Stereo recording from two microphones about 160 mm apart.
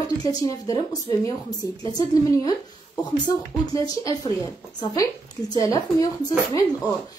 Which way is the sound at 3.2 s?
25° left (ahead or behind).